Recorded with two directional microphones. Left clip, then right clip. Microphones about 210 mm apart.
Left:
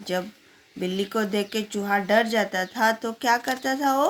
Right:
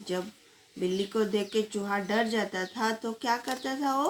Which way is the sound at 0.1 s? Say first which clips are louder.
Left 6 dB; 50° left (ahead or behind).